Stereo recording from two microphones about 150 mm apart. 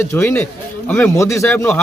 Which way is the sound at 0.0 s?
20° left (ahead or behind).